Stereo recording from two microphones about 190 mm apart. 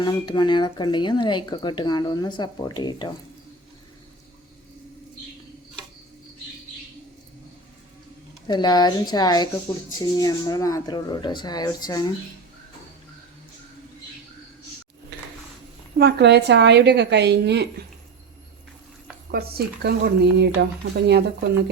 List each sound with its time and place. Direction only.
0.0 s speech: 25° left (ahead or behind)
8.4 s speech: 20° left (ahead or behind)
16.0 s a woman's voice: 60° right (ahead or behind)
19.3 s a woman's voice: 55° right (ahead or behind)